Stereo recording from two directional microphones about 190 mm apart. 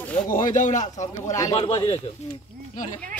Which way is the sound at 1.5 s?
25° left (ahead or behind).